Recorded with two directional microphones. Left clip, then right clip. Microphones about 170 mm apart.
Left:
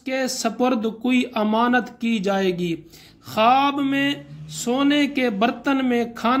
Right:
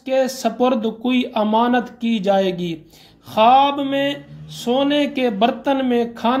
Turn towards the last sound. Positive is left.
turn(degrees=20)  # may be behind; listen again after turning